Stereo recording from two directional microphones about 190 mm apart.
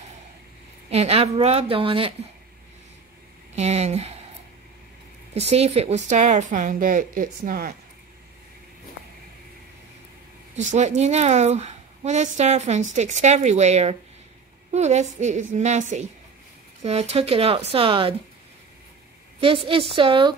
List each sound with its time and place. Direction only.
0.8 s speech: 35° right (ahead or behind)
3.5 s speech: 35° right (ahead or behind)
5.3 s speech: 35° right (ahead or behind); by 7.7 s 50° right (ahead or behind)
10.5 s speech: 40° right (ahead or behind)
19.4 s a woman's voice: 30° right (ahead or behind)